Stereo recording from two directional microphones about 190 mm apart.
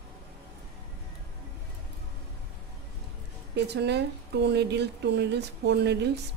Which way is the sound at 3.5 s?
60° right (ahead or behind).